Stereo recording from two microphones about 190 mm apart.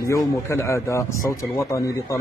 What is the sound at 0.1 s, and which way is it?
A man's voice, 15° left (ahead or behind).